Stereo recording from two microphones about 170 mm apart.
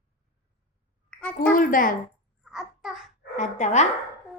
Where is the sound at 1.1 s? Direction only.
5° left (ahead or behind).